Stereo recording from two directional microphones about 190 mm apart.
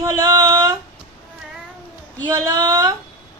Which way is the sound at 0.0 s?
20° right (ahead or behind).